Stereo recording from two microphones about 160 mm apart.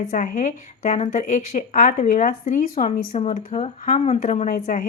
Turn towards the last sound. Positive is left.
turn(degrees=55)  # may be behind; listen again after turning